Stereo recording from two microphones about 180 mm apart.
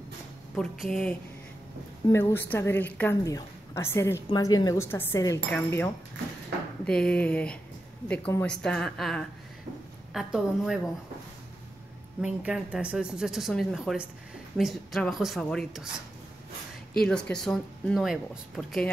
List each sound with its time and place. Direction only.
0.6 s speech: centre (ahead or behind)
2.0 s a woman's voice: 15° left (ahead or behind); by 10.8 s 5° right (ahead or behind)
12.2 s speech: 5° right (ahead or behind)
17.0 s speech: 5° left (ahead or behind)